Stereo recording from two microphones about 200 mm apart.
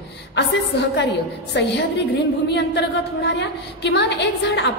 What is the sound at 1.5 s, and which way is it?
A woman's voice, 60° left (ahead or behind).